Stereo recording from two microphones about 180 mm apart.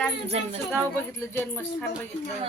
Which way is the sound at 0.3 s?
35° right (ahead or behind).